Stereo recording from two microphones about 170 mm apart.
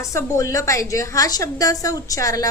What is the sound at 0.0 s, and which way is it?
A woman's voice, 15° left (ahead or behind).